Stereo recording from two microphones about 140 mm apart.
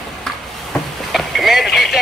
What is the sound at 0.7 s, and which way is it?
Boat, centre (ahead or behind).